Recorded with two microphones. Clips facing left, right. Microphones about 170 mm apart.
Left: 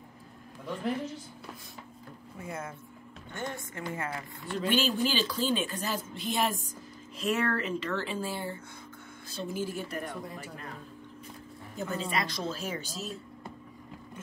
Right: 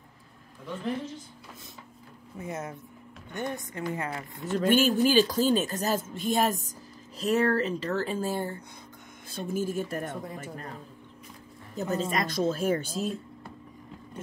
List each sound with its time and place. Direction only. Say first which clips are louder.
2.3 s a woman's voice: right 4 dB; 20° right (ahead or behind)
4.5 s speech: right 6 dB; 45° right (ahead or behind)
11.7 s speech: right 4 dB; 40° right (ahead or behind)